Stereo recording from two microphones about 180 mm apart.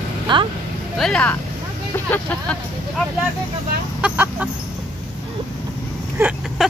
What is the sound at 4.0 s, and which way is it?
Speech, 5° right (ahead or behind).